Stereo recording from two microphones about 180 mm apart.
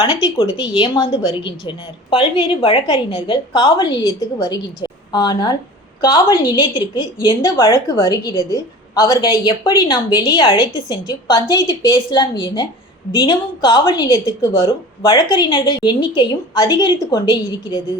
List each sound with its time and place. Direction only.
0.0 s a woman's voice: 30° left (ahead or behind)